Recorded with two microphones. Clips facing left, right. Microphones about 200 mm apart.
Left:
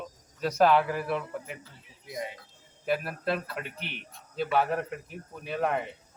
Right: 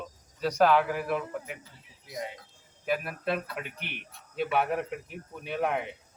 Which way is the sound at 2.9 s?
Centre (ahead or behind).